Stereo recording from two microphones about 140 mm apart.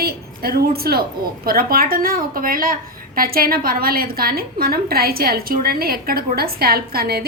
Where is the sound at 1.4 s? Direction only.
90° right.